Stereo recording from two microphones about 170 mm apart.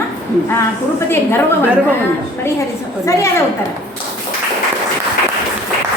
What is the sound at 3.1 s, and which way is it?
Speech, 15° left (ahead or behind).